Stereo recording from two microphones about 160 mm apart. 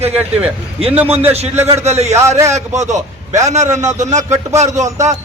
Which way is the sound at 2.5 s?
45° right (ahead or behind).